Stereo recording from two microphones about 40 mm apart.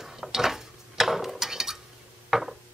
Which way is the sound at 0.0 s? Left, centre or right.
Centre.